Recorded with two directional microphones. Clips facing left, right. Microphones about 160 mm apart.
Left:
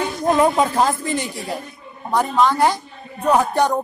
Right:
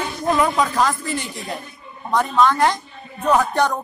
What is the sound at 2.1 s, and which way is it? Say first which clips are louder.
A man's voice: even; 10° left (ahead or behind).